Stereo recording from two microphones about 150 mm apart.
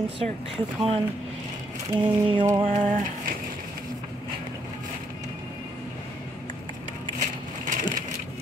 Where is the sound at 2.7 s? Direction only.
55° right (ahead or behind).